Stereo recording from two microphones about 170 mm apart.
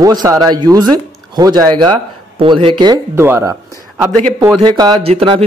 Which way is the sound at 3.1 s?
15° right (ahead or behind).